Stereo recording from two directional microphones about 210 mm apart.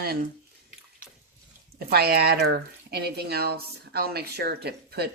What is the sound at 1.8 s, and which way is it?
Speech, 45° right (ahead or behind).